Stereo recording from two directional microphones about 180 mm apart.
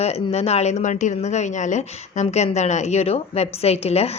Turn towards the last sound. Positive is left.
turn(degrees=35)  # may be behind; listen again after turning